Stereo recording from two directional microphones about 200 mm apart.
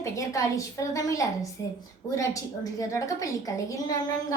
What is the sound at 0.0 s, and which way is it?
A woman's voice, 15° left (ahead or behind).